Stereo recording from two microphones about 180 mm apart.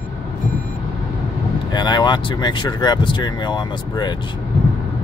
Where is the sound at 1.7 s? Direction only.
25° left (ahead or behind).